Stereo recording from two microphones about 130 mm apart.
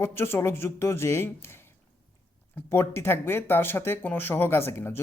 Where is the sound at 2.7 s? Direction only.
20° left (ahead or behind).